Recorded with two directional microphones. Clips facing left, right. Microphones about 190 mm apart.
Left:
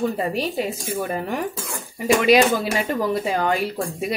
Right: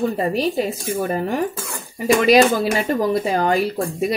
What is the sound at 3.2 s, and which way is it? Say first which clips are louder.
Speech: right 3 dB; 35° right (ahead or behind).